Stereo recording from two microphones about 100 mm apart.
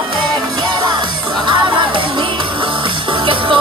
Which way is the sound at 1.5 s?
55° right (ahead or behind).